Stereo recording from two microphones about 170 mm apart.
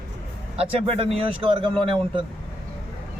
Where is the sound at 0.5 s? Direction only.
35° right (ahead or behind).